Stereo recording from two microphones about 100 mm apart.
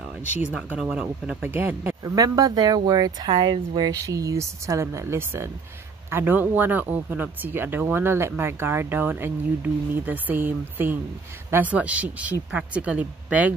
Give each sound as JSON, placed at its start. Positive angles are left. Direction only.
{"t": 0.5, "sound": "speech", "side_deg": -10}
{"t": 2.0, "sound": "speech", "side_deg": -40}